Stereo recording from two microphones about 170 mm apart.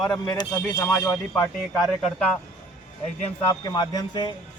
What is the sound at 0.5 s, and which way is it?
Speech, 10° left (ahead or behind).